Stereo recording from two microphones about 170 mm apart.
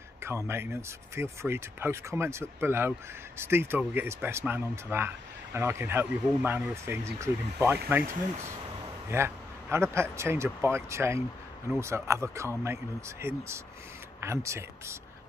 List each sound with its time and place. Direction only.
0.2 s speech: 15° right (ahead or behind)
9.1 s speech: 15° right (ahead or behind)